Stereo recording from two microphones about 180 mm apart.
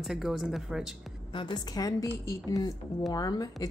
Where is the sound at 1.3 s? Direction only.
25° left (ahead or behind).